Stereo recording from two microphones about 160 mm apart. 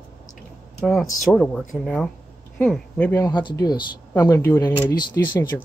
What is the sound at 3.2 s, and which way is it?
Speech, 25° left (ahead or behind).